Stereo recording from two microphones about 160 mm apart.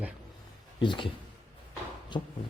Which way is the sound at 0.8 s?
30° left (ahead or behind).